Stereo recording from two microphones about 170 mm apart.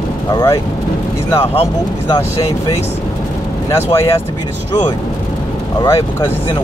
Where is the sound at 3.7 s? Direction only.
15° left (ahead or behind).